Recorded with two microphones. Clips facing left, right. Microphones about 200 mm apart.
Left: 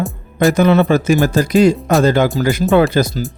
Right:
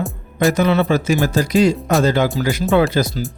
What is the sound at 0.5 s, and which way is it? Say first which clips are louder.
Speech: left 6 dB; 50° left (ahead or behind).